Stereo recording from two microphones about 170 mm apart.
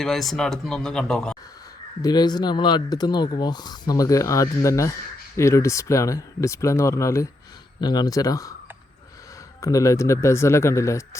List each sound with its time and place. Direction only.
0.0 s speech: centre (ahead or behind)
2.0 s speech: 25° left (ahead or behind)
9.6 s speech: 20° left (ahead or behind)